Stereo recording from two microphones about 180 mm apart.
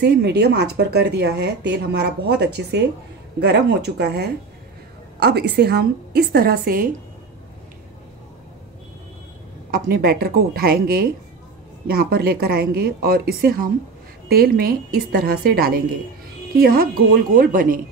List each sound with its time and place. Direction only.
0.0 s speech: 65° right (ahead or behind)
9.7 s speech: 55° right (ahead or behind)